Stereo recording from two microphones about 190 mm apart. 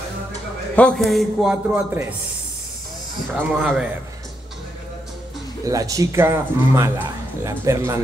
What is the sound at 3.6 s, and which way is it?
Speech, 5° right (ahead or behind).